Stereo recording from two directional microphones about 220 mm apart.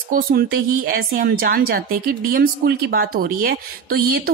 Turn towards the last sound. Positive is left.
turn(degrees=-45)  # may be behind; listen again after turning